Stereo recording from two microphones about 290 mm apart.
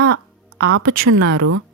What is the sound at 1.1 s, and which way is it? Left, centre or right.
Speech, right.